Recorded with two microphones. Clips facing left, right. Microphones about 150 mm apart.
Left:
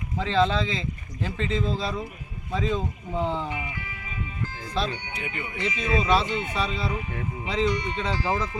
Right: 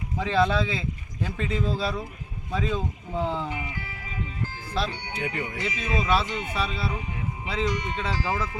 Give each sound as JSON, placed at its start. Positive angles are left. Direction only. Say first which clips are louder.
{"t": 0.2, "sound": "speech", "louder": "even", "side_deg": -10}
{"t": 5.0, "sound": "speech", "louder": "right 4 dB", "side_deg": -35}
{"t": 5.6, "sound": "speech", "louder": "left 4 dB", "side_deg": -5}